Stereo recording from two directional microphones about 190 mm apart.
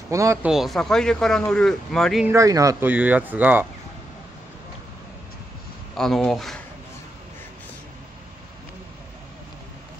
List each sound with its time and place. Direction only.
0.1 s speech: 15° right (ahead or behind)
0.5 s speech: centre (ahead or behind)
2.3 s speech: 15° right (ahead or behind)
5.9 s speech: centre (ahead or behind)